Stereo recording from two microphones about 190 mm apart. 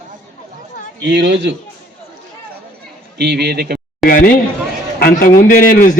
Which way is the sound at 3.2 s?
60° right (ahead or behind).